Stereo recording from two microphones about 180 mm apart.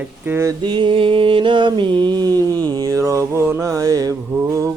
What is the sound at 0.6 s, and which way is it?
Mantra, 25° right (ahead or behind).